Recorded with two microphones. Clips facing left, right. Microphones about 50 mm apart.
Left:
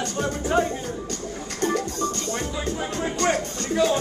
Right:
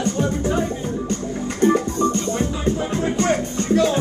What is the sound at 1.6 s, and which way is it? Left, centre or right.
Music, right.